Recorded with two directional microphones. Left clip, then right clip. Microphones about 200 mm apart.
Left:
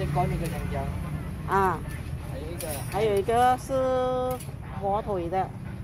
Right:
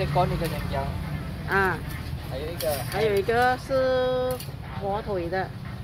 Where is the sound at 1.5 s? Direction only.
5° left (ahead or behind).